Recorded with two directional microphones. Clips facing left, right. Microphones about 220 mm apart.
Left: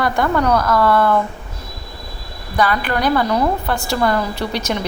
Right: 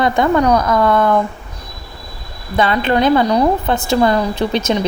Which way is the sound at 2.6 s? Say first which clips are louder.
Right 4 dB; 25° right (ahead or behind).